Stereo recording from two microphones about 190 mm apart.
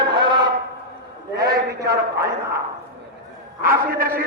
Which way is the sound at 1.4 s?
55° right (ahead or behind).